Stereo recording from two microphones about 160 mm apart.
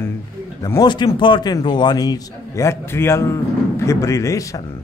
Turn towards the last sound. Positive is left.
turn(degrees=20)  # may be behind; listen again after turning